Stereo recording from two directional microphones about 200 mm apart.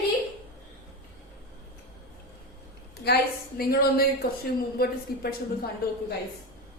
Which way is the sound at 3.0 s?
50° left (ahead or behind).